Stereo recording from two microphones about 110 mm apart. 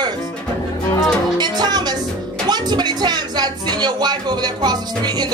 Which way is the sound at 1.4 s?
40° right (ahead or behind).